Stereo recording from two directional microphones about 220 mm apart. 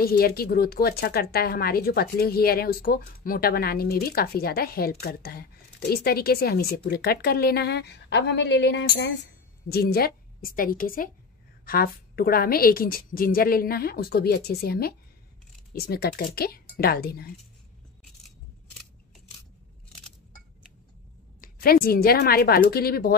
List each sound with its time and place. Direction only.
0.0 s a woman's voice: 45° left (ahead or behind)
21.4 s a woman's voice: 40° left (ahead or behind)